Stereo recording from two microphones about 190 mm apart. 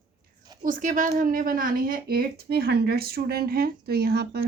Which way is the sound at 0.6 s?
45° right (ahead or behind).